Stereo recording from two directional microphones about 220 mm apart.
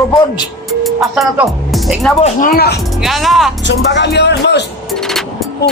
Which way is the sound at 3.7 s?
50° left (ahead or behind).